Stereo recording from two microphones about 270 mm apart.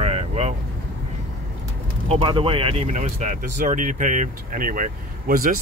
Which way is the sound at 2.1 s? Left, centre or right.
Centre.